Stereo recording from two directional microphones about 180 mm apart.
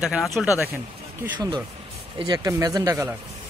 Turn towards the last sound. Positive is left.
turn(degrees=-15)  # may be behind; listen again after turning